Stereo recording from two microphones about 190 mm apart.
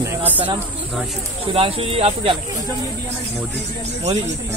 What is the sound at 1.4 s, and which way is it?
Speech, 30° right (ahead or behind).